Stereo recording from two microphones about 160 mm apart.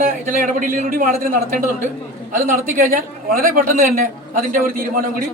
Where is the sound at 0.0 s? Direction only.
55° right (ahead or behind).